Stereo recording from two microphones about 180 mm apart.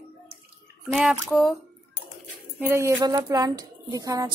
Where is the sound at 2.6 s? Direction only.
10° right (ahead or behind).